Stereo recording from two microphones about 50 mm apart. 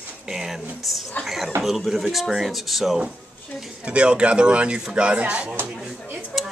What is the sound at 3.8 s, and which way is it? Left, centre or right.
Speech, right.